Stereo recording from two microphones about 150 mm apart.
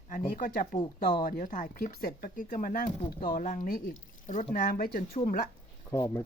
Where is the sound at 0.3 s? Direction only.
70° left (ahead or behind).